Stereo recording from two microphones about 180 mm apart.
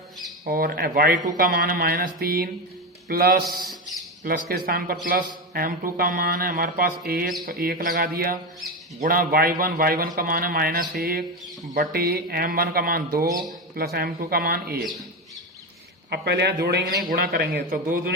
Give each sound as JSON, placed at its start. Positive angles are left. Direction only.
{"t": 0.4, "sound": "a man's voice", "side_deg": -55}
{"t": 16.0, "sound": "a man's voice", "side_deg": -65}